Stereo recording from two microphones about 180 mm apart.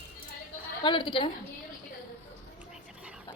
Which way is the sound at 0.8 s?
25° left (ahead or behind).